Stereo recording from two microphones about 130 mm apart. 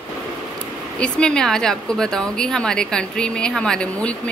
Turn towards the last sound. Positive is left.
turn(degrees=10)  # may be behind; listen again after turning